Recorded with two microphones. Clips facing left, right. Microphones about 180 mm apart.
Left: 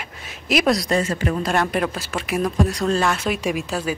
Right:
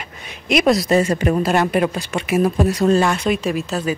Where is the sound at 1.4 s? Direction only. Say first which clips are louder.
Right 4 dB; 5° right (ahead or behind).